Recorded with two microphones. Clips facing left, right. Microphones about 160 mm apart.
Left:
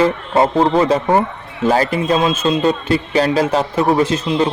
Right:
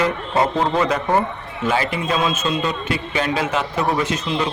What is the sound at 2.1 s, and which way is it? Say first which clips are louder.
A man's voice: left 4 dB; 30° left (ahead or behind).